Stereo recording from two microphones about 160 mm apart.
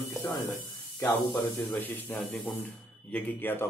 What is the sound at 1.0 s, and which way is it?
A man's voice, centre (ahead or behind).